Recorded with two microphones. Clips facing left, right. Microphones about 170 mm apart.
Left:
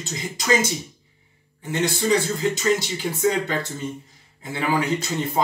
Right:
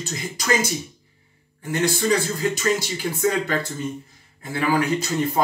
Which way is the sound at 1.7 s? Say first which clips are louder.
Even; 20° left (ahead or behind).